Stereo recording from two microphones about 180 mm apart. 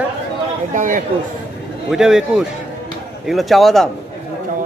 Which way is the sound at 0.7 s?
45° right (ahead or behind).